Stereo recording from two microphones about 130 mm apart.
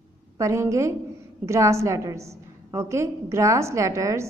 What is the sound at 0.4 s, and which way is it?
A woman's voice, 25° right (ahead or behind).